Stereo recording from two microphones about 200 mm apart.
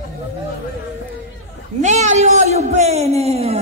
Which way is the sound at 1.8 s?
35° right (ahead or behind).